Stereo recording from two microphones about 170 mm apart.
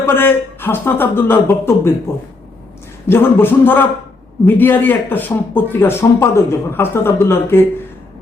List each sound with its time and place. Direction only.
0.0 s a man's voice: 15° left (ahead or behind)
3.1 s a man's voice: 15° left (ahead or behind)